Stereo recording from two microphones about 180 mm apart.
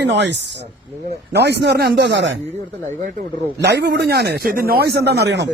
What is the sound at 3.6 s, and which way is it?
Speech, 70° right (ahead or behind).